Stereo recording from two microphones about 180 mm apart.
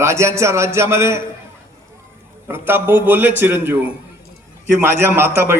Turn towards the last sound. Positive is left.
turn(degrees=-15)  # may be behind; listen again after turning